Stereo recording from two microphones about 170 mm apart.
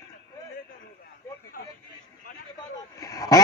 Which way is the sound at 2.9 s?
20° left (ahead or behind).